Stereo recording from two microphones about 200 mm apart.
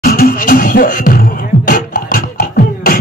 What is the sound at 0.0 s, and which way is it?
Beatboxing, 45° left (ahead or behind).